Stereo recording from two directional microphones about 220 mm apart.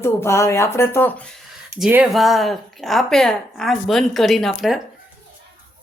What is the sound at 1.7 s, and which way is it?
Speech, 5° right (ahead or behind).